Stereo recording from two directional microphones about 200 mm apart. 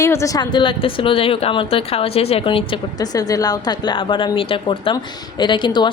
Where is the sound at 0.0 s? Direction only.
15° left (ahead or behind).